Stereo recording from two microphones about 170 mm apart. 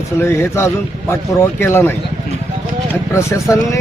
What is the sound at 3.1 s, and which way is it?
Speech, 15° left (ahead or behind).